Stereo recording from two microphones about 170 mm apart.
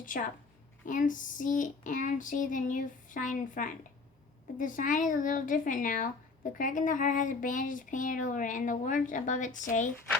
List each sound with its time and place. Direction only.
0.0 s a woman's voice: 50° left (ahead or behind)